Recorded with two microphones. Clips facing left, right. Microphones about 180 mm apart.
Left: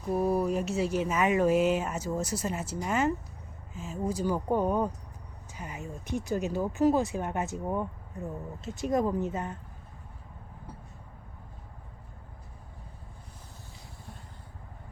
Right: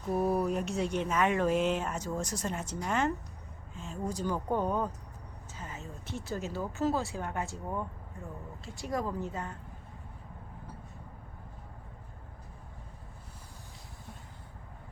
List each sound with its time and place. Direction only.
0.1 s speech: centre (ahead or behind); by 9.6 s 20° left (ahead or behind)